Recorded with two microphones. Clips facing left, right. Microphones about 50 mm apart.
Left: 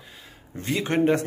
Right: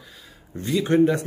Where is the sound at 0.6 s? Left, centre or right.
Left.